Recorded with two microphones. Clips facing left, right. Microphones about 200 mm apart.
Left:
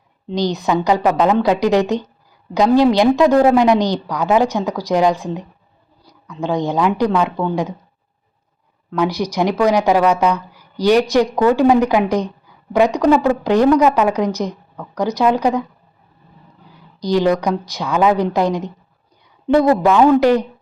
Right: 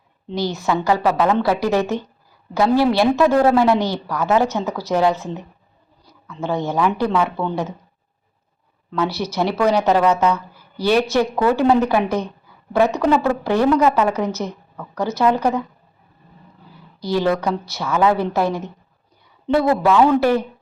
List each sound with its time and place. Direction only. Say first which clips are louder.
0.3 s speech: left 3 dB; 15° left (ahead or behind)
8.9 s speech: left 3 dB; 15° left (ahead or behind)
17.0 s speech: left 3 dB; 15° left (ahead or behind)